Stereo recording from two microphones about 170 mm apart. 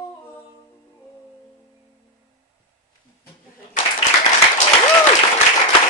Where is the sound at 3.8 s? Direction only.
50° left (ahead or behind).